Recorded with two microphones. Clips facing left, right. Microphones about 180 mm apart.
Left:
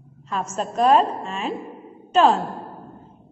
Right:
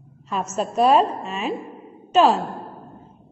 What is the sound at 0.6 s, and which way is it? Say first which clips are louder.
A woman's voice: right 1 dB; 10° right (ahead or behind).